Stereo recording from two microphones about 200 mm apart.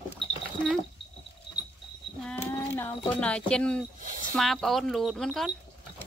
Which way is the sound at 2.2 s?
10° left (ahead or behind).